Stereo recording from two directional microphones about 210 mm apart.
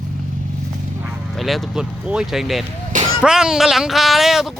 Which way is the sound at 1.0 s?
Centre (ahead or behind).